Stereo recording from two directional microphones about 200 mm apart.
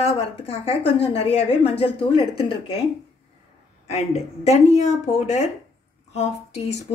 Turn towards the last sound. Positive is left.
turn(degrees=35)  # may be behind; listen again after turning